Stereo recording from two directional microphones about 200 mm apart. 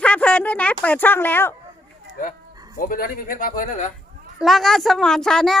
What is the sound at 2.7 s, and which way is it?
Speech, 45° left (ahead or behind).